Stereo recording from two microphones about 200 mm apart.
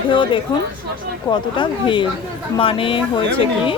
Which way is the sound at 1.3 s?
25° left (ahead or behind).